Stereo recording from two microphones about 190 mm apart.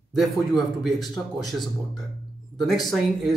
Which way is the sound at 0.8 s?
Centre (ahead or behind).